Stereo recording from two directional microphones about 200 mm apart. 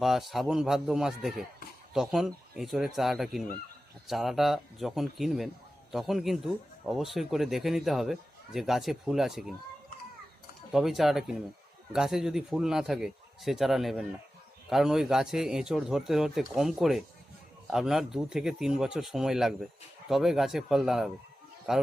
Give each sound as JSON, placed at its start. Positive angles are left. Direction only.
{"t": 0.0, "sound": "speech", "side_deg": 0}
{"t": 10.7, "sound": "speech", "side_deg": 0}